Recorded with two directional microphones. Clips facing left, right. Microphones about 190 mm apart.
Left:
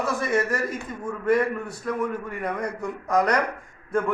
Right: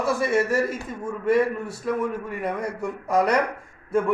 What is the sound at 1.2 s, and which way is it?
A man's voice, 5° right (ahead or behind).